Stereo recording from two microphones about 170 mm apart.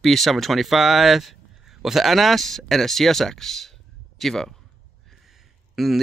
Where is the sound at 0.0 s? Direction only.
Centre (ahead or behind).